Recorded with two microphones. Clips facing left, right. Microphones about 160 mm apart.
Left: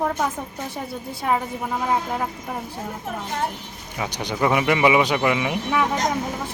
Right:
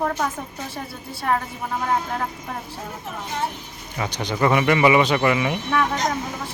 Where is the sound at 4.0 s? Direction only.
10° left (ahead or behind).